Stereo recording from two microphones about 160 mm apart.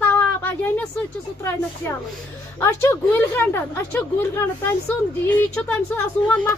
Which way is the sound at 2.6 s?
10° left (ahead or behind).